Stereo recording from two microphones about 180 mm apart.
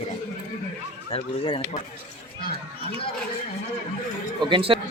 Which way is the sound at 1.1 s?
30° left (ahead or behind).